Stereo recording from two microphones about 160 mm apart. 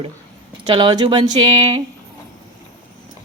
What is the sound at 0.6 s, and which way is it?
Speech, 25° right (ahead or behind).